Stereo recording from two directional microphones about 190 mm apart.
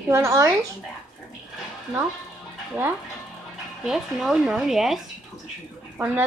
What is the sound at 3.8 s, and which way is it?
Speech, centre (ahead or behind).